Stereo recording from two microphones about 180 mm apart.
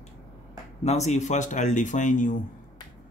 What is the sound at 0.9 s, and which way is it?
Speech, 40° left (ahead or behind).